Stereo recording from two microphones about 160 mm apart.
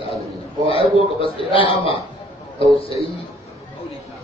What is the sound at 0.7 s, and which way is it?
Speech, 35° left (ahead or behind).